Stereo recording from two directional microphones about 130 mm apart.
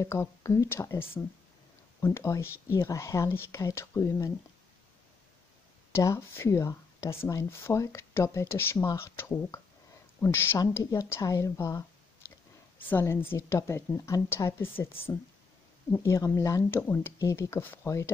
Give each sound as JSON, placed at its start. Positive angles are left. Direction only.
{"t": 0.0, "sound": "speech", "side_deg": 20}
{"t": 5.9, "sound": "a woman's voice", "side_deg": 20}